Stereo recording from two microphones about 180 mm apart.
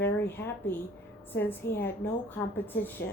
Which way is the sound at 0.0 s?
10° left (ahead or behind).